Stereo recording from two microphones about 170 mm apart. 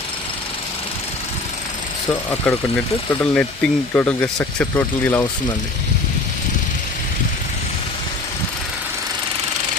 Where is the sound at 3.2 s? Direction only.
10° left (ahead or behind).